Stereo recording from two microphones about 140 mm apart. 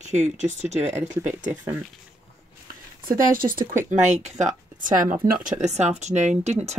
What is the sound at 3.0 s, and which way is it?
Speech, 80° right.